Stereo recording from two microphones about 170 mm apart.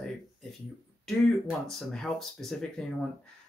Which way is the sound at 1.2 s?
Centre (ahead or behind).